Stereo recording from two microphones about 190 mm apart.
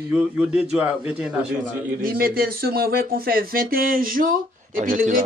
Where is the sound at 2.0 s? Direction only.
50° right (ahead or behind).